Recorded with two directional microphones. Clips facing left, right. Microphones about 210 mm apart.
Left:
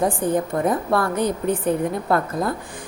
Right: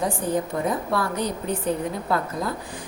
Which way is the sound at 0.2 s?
55° left (ahead or behind).